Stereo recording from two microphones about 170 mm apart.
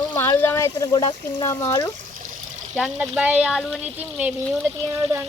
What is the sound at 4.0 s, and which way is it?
Speech, 10° right (ahead or behind).